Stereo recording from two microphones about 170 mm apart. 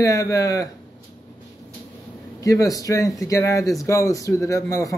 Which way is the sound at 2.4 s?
20° left (ahead or behind).